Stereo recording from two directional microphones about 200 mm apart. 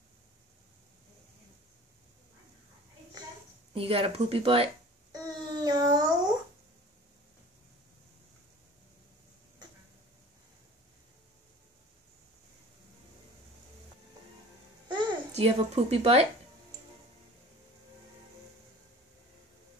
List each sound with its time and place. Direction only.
3.7 s speech: 30° right (ahead or behind)
5.1 s a sound: 20° right (ahead or behind)
14.9 s babbling: 25° right (ahead or behind)